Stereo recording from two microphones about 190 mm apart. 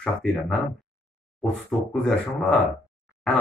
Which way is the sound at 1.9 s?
5° left (ahead or behind).